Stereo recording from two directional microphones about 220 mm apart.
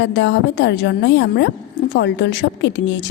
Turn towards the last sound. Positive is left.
turn(degrees=55)  # may be behind; listen again after turning